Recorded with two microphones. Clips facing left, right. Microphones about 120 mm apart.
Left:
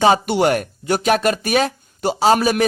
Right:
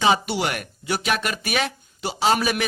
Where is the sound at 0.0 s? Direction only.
45° left (ahead or behind).